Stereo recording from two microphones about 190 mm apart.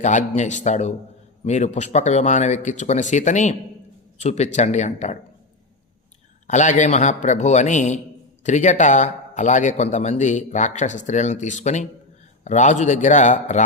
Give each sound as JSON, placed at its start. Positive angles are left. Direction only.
{"t": 0.0, "sound": "a man's voice", "side_deg": 40}
{"t": 6.5, "sound": "a man's voice", "side_deg": 40}